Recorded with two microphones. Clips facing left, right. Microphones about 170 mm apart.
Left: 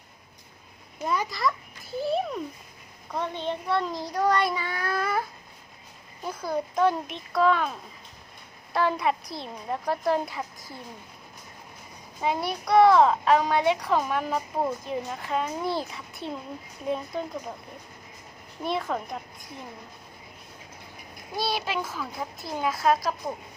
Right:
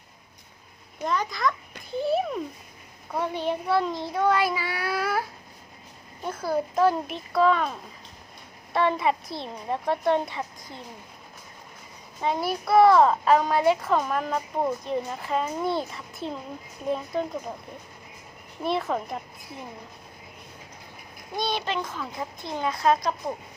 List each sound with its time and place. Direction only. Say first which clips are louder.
1.0 s a child's voice: right 1 dB; 10° left (ahead or behind)
6.4 s a child's voice: right 2 dB; 5° right (ahead or behind)
12.2 s a child's voice: right 1 dB; centre (ahead or behind)
18.6 s a child's voice: right 2 dB; centre (ahead or behind)
21.3 s a child's voice: right 1 dB; 5° left (ahead or behind)